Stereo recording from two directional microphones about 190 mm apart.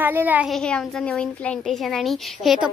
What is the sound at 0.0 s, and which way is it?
A child's voice, 10° right (ahead or behind).